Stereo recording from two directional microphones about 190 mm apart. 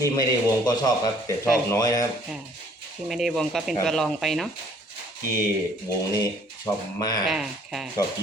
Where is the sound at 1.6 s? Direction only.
20° left (ahead or behind).